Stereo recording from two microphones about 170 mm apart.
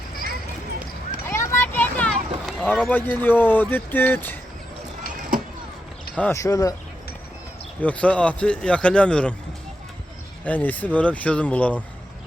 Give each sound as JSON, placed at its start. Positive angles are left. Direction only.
{"t": 1.2, "sound": "a sound", "side_deg": 15}
{"t": 2.5, "sound": "speech", "side_deg": 0}
{"t": 6.1, "sound": "speech", "side_deg": 15}
{"t": 7.8, "sound": "speech", "side_deg": 10}
{"t": 10.4, "sound": "speech", "side_deg": 10}